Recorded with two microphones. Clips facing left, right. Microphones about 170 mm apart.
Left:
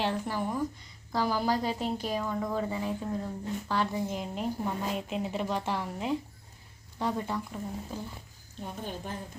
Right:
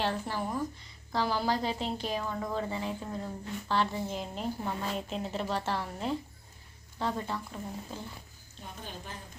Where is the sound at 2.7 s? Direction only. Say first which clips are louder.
Left 2 dB; 20° right (ahead or behind).